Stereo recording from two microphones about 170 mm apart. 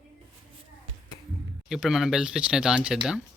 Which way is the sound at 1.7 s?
Centre (ahead or behind).